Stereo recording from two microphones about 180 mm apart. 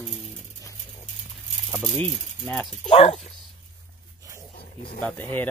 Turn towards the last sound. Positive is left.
turn(degrees=10)  # may be behind; listen again after turning